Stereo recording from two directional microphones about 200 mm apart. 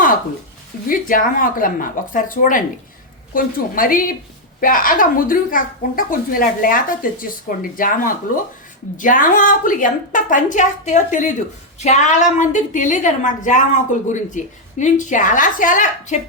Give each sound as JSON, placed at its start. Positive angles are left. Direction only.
{"t": 0.9, "sound": "a woman's voice", "side_deg": 45}